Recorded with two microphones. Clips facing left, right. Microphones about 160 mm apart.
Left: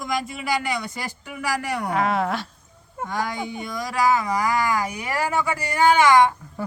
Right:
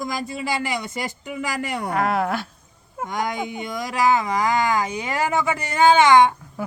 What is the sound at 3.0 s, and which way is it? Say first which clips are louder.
Speech: right 1 dB; 20° right (ahead or behind).